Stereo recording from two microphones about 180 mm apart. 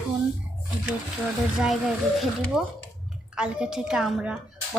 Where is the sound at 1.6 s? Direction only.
5° right (ahead or behind).